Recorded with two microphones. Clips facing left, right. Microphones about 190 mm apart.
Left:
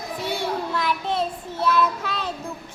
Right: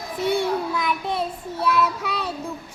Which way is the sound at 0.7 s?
10° right (ahead or behind).